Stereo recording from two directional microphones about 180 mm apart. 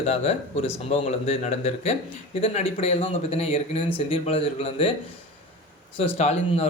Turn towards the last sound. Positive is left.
turn(degrees=35)  # may be behind; listen again after turning